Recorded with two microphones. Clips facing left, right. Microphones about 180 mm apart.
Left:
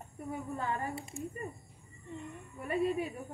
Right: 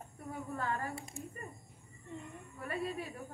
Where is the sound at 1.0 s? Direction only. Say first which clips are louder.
Left 4 dB; centre (ahead or behind).